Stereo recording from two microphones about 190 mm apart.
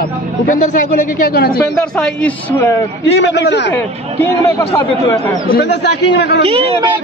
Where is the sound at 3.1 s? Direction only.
70° left (ahead or behind).